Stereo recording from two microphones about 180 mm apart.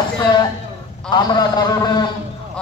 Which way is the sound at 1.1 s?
25° left (ahead or behind).